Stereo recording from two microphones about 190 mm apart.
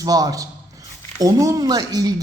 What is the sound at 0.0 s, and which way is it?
Speech, 20° right (ahead or behind).